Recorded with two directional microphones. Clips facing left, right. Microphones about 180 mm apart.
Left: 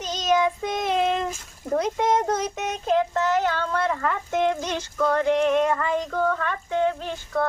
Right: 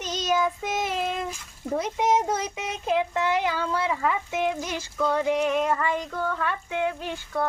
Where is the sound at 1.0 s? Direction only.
85° left.